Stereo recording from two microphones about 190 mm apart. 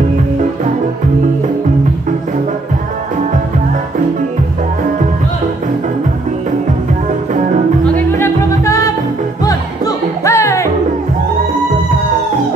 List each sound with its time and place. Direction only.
7.8 s music: 10° left (ahead or behind)